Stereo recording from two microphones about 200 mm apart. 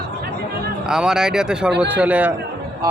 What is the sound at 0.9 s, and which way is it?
A man's voice, 5° right (ahead or behind).